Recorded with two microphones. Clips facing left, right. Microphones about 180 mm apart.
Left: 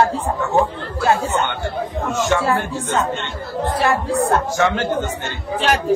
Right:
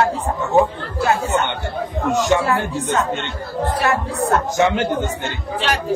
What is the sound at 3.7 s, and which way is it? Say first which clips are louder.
Speech: left 4 dB; 30° left (ahead or behind).